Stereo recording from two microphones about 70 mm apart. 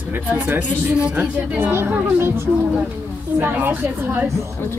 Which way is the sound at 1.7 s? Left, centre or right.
Right.